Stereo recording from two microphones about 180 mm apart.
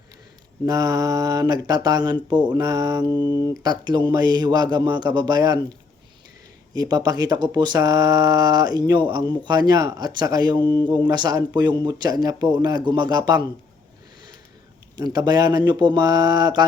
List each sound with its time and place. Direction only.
0.6 s speech: 20° right (ahead or behind)
6.7 s speech: 20° right (ahead or behind)
14.9 s speech: 20° right (ahead or behind)